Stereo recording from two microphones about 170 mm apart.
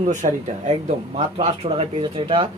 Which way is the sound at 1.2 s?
35° right (ahead or behind).